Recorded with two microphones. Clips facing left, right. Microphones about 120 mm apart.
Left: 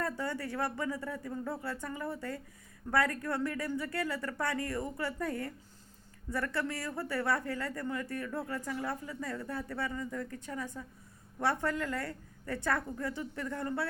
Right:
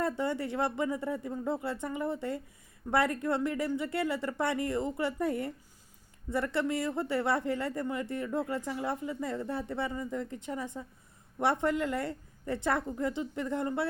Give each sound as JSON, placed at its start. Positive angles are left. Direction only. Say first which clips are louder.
{"t": 0.0, "sound": "speech", "louder": "right 4 dB", "side_deg": -20}